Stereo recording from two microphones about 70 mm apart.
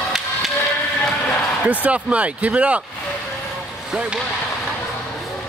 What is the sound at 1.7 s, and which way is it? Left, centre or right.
Speech, centre.